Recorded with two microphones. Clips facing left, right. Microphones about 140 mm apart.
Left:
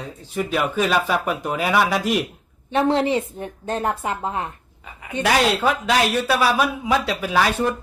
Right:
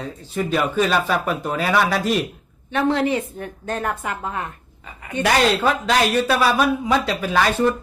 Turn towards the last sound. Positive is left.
turn(degrees=5)  # may be behind; listen again after turning